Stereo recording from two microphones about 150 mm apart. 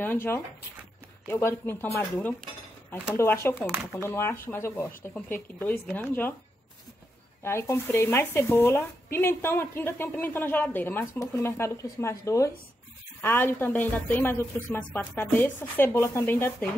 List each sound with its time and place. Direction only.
0.0 s speech: 15° left (ahead or behind)
7.4 s speech: 15° left (ahead or behind)